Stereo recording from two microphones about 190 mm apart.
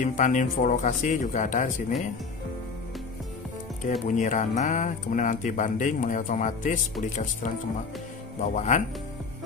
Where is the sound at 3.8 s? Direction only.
40° left (ahead or behind).